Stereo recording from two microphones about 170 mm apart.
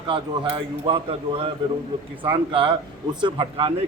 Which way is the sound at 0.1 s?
30° right (ahead or behind).